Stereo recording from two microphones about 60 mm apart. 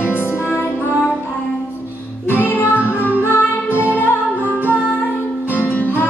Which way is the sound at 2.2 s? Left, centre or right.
Left.